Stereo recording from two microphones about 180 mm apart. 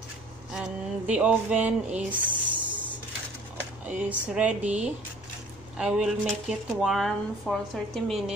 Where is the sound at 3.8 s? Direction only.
5° right (ahead or behind).